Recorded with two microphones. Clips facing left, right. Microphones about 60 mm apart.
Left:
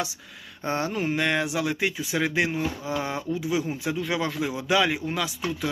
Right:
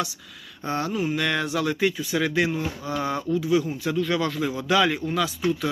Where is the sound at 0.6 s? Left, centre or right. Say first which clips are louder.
Right 1 dB; left.